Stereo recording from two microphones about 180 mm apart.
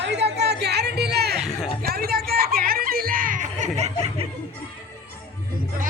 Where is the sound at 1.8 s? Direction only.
55° right (ahead or behind); by 3.9 s 40° right (ahead or behind).